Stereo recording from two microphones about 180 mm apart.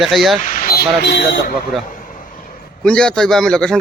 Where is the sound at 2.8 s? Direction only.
5° left (ahead or behind).